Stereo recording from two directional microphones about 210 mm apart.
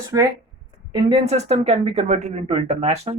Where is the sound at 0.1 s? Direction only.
15° right (ahead or behind).